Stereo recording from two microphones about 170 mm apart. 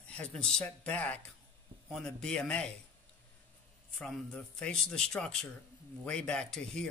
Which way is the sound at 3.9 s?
5° left (ahead or behind).